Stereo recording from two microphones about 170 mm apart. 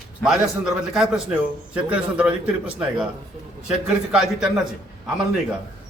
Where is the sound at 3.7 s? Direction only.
5° right (ahead or behind).